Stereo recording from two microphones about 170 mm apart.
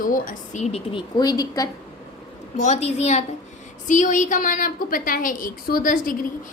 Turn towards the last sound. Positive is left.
turn(degrees=55)  # may be behind; listen again after turning